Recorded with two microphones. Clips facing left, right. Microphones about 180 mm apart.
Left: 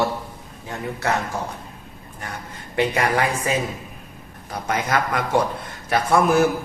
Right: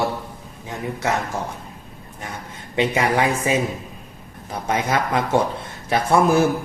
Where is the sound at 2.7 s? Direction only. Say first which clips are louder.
Right 1 dB; 20° right (ahead or behind).